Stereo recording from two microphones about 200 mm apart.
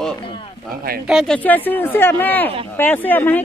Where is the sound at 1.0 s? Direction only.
Centre (ahead or behind).